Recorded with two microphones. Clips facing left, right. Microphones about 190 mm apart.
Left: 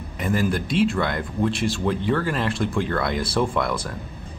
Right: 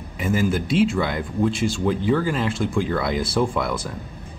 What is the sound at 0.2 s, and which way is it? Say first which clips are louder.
Speech: right 1 dB; centre (ahead or behind).